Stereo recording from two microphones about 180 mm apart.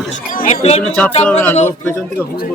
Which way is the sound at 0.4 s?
35° left (ahead or behind).